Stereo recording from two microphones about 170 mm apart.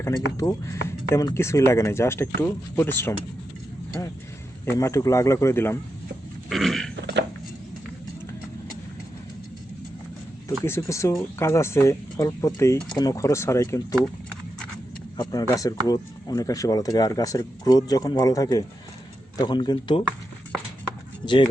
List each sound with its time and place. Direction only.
0.0 s speech: 20° left (ahead or behind)
6.5 s a sound: centre (ahead or behind)
10.6 s speech: 15° left (ahead or behind)
15.2 s speech: 20° left (ahead or behind)
21.2 s speech: 30° left (ahead or behind)